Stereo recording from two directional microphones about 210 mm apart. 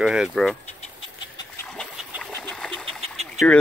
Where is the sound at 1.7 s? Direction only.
5° left (ahead or behind).